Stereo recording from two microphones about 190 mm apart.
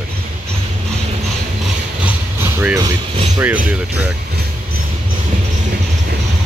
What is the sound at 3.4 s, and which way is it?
Speech, 5° right (ahead or behind).